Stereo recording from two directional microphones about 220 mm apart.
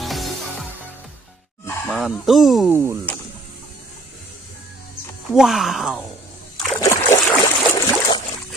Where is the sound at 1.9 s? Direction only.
Centre (ahead or behind).